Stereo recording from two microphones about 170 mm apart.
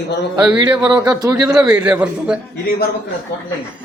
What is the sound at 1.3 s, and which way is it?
Speech, 5° right (ahead or behind).